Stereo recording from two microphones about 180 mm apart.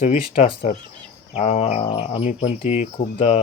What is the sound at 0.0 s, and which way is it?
Speech, 35° left (ahead or behind).